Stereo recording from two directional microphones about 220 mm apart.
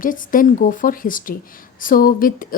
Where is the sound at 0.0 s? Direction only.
40° left (ahead or behind).